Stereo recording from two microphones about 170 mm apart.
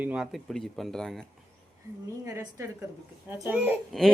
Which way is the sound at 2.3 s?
15° right (ahead or behind).